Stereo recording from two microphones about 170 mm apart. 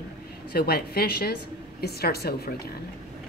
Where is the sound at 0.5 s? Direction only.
65° left (ahead or behind).